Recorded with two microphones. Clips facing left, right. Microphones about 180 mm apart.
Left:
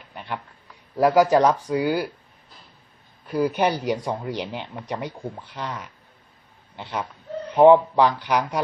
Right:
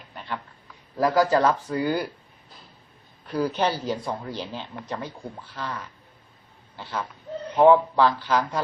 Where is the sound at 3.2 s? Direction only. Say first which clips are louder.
Left 3 dB; 10° left (ahead or behind).